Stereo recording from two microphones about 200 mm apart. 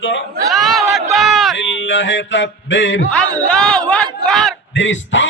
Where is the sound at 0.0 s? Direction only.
65° left (ahead or behind).